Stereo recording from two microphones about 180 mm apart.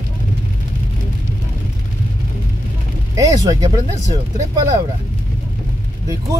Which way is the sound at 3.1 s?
20° right (ahead or behind).